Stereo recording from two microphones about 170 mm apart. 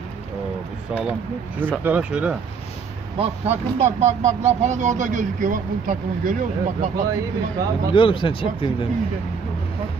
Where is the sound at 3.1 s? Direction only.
35° right (ahead or behind); by 6.4 s 50° right (ahead or behind).